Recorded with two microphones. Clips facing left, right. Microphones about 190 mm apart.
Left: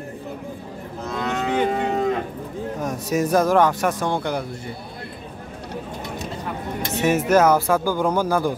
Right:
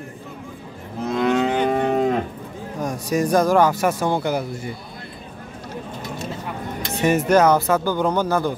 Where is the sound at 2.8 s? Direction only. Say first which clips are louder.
Right 2 dB; 5° left (ahead or behind).